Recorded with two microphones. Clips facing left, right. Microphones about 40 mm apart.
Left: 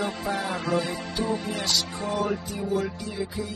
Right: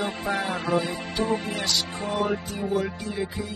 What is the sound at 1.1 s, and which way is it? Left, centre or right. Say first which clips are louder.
Music: right 4 dB; right.